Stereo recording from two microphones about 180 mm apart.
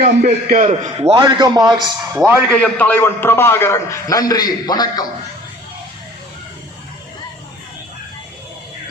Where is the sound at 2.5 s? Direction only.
10° left (ahead or behind).